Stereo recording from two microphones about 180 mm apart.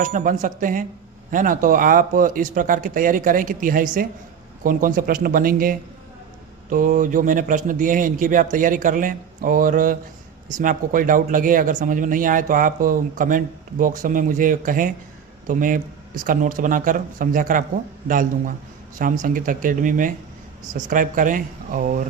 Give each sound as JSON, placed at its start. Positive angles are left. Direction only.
{"t": 0.0, "sound": "speech", "side_deg": -50}